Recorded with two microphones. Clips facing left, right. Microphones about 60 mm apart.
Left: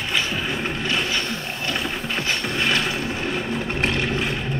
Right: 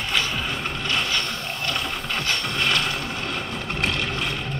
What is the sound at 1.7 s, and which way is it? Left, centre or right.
Mechanisms, centre.